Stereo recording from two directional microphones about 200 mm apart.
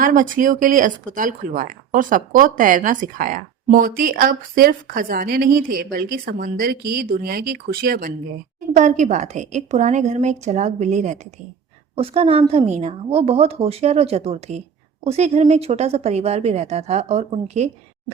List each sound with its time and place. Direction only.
0.0 s a woman's voice: 40° right (ahead or behind)